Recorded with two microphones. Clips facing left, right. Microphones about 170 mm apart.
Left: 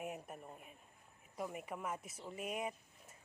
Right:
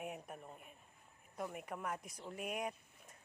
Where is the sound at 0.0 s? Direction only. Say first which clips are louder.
Left 1 dB; 5° left (ahead or behind).